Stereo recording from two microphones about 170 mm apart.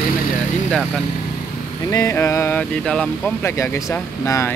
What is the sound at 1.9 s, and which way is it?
A man's voice, 20° left (ahead or behind).